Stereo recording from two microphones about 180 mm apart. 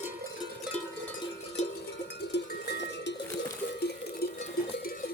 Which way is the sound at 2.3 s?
75° left (ahead or behind).